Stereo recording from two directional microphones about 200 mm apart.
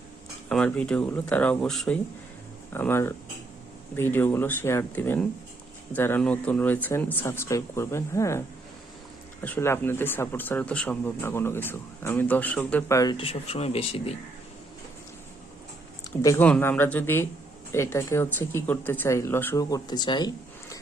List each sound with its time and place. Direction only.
0.4 s speech: 5° left (ahead or behind)
13.1 s speech: 30° left (ahead or behind)
16.2 s speech: 10° left (ahead or behind)